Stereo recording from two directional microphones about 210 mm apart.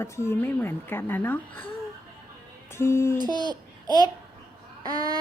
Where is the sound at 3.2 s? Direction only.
20° right (ahead or behind).